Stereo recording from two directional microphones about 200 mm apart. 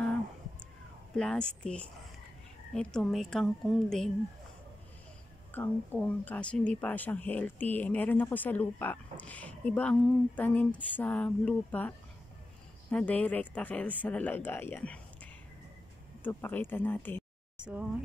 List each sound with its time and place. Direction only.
1.1 s a woman's voice: 5° left (ahead or behind)
5.5 s speech: 10° left (ahead or behind)
12.9 s speech: 5° left (ahead or behind)
16.3 s speech: 10° left (ahead or behind)